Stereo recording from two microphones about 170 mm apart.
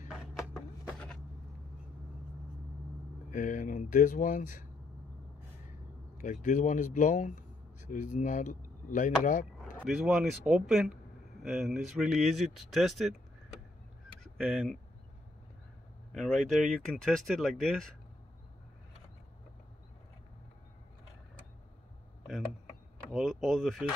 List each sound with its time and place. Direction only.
3.3 s speech: 50° left (ahead or behind)
6.1 s speech: 50° left (ahead or behind)
9.8 s speech: centre (ahead or behind)
14.4 s speech: centre (ahead or behind)
16.1 s speech: 5° left (ahead or behind)
23.1 s speech: centre (ahead or behind)